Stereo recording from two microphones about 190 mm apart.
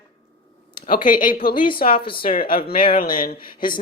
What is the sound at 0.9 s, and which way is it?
Speech, 50° left (ahead or behind).